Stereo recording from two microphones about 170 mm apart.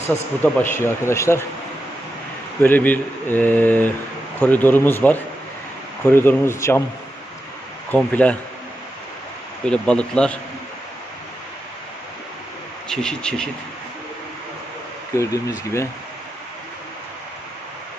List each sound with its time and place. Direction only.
0.4 s speech: 15° left (ahead or behind)
2.6 s speech: 10° left (ahead or behind)
7.9 s speech: 10° left (ahead or behind)
9.6 s speech: 5° left (ahead or behind)
12.9 s speech: 5° left (ahead or behind)
15.1 s speech: 20° left (ahead or behind)